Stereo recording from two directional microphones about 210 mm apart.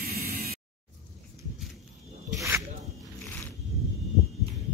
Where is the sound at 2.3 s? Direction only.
15° right (ahead or behind).